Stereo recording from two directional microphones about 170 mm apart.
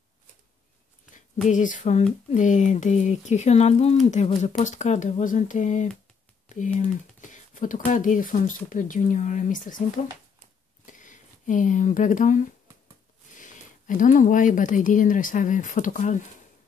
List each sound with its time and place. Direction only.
1.5 s speech: 50° left (ahead or behind)
10.9 s a sound: 50° left (ahead or behind)
13.3 s speech: 50° left (ahead or behind)